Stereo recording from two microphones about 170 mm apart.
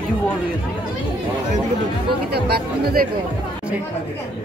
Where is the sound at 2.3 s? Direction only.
70° right (ahead or behind).